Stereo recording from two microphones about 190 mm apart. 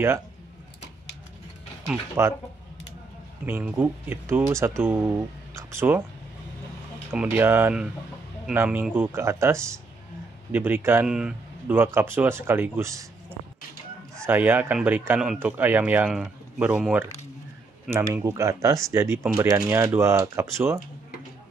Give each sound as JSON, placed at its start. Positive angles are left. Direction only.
{"t": 2.2, "sound": "speech", "side_deg": -15}
{"t": 3.4, "sound": "speech", "side_deg": -10}
{"t": 7.1, "sound": "speech", "side_deg": -10}
{"t": 14.2, "sound": "speech", "side_deg": -10}